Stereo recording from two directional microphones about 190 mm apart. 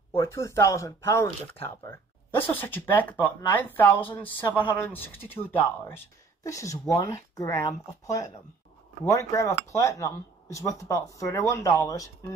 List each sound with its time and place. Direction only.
0.1 s speech: 15° left (ahead or behind)